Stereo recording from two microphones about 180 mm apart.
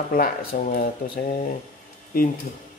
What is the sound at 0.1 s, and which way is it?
Speech, 50° left (ahead or behind).